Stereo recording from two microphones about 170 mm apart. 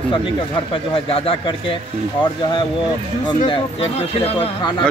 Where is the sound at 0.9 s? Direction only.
35° left (ahead or behind).